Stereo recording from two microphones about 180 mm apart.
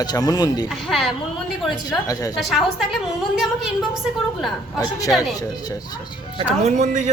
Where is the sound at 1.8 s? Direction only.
20° left (ahead or behind).